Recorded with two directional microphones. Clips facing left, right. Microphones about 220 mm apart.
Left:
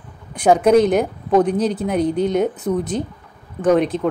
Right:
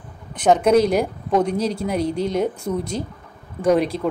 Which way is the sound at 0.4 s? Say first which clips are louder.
Left 2 dB; 5° left (ahead or behind).